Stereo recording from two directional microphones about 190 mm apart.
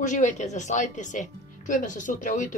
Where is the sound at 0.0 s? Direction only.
40° left (ahead or behind).